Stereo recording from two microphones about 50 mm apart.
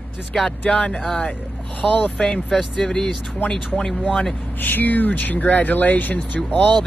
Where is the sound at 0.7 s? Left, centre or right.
Left.